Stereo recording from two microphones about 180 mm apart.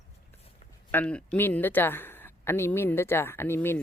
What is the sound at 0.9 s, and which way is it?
Speech, 10° left (ahead or behind).